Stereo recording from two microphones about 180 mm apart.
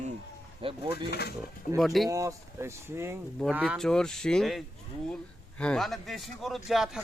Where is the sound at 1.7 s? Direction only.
Centre (ahead or behind).